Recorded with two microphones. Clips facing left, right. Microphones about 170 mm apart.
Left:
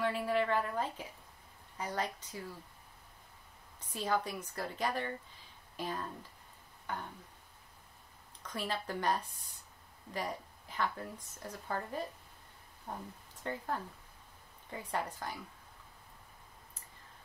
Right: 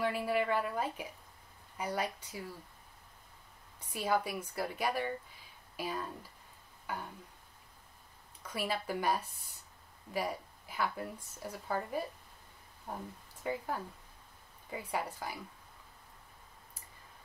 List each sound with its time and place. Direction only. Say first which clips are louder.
0.0 s a woman's voice: even; 10° right (ahead or behind)
3.8 s a woman's voice: right 2 dB; 10° right (ahead or behind)
8.4 s a woman's voice: right 2 dB; 10° right (ahead or behind)